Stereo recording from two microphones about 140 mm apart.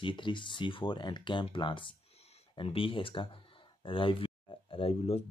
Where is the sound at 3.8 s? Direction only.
40° left (ahead or behind).